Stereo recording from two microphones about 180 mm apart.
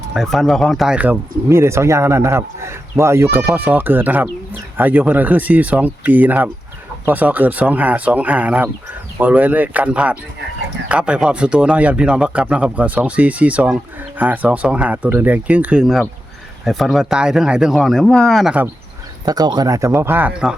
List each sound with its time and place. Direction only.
0.1 s speech: centre (ahead or behind)
19.2 s speech: 20° right (ahead or behind); by 20.6 s 5° right (ahead or behind)